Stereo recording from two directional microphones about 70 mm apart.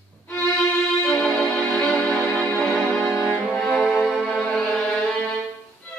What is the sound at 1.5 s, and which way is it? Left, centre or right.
Music, centre.